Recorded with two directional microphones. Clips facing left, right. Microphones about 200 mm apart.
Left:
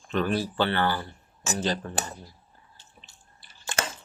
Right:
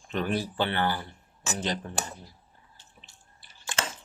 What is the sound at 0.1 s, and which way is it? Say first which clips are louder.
Speech: left 3 dB; 15° right (ahead or behind).